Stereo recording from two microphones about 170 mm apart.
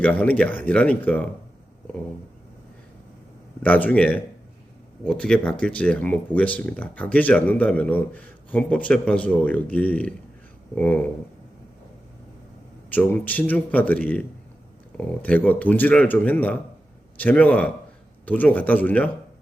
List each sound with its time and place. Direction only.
0.0 s speech: 10° left (ahead or behind)
3.6 s speech: 10° left (ahead or behind)
12.9 s speech: 10° left (ahead or behind)